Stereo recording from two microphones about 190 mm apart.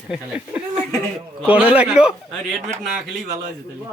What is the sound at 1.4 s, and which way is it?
A man's voice, 5° right (ahead or behind).